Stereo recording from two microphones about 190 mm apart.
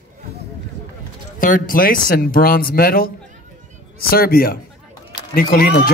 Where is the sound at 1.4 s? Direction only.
45° left (ahead or behind).